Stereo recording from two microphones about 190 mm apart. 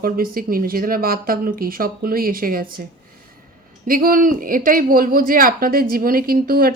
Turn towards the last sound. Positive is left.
turn(degrees=-50)  # may be behind; listen again after turning